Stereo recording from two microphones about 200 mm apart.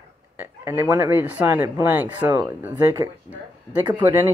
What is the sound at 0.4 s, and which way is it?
Speech, 15° right (ahead or behind).